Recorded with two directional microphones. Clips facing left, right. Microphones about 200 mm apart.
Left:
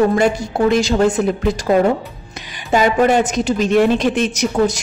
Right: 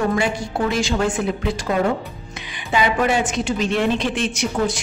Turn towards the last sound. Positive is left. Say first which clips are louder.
# left 5 dB
turn(degrees=40)  # may be behind; listen again after turning